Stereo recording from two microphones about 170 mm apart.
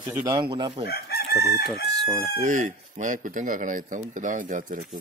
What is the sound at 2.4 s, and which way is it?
Speech, 45° right (ahead or behind).